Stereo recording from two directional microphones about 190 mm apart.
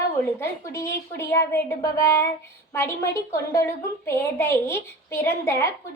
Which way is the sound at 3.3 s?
15° left (ahead or behind).